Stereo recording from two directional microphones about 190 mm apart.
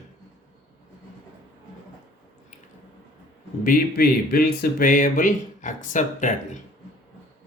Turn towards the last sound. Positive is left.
turn(degrees=40)  # may be behind; listen again after turning